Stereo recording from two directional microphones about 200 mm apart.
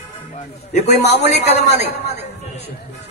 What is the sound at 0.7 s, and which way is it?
Speech, 35° left (ahead or behind).